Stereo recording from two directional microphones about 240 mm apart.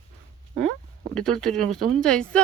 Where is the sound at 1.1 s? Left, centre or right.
Centre.